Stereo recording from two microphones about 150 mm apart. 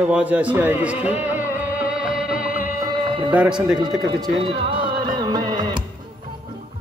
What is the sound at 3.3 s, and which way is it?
Speech, 10° right (ahead or behind).